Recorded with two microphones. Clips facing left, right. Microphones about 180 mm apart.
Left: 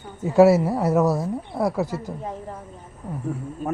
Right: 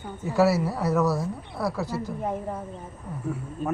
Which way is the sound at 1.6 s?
45° left (ahead or behind).